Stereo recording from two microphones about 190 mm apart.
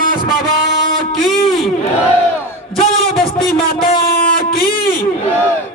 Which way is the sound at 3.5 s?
50° left (ahead or behind).